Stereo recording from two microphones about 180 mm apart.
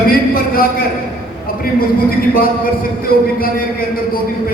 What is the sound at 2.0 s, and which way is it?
Speech, 55° left (ahead or behind).